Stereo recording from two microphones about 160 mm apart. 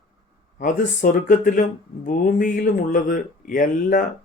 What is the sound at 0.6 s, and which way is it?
Speech, 60° left (ahead or behind).